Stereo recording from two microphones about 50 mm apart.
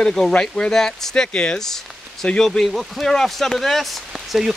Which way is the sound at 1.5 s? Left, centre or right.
Centre.